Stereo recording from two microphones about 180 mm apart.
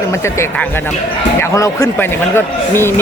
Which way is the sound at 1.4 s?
15° left (ahead or behind).